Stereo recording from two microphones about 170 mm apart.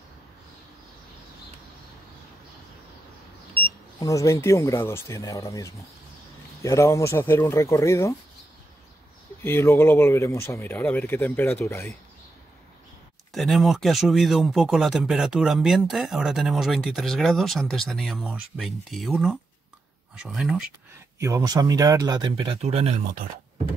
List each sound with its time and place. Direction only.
4.0 s speech: 20° left (ahead or behind)
9.4 s speech: 15° left (ahead or behind)
13.3 s speech: centre (ahead or behind)
21.2 s speech: 20° right (ahead or behind)
22.6 s speech: 40° right (ahead or behind)